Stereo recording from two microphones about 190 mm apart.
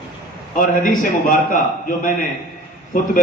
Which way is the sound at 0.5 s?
45° left (ahead or behind).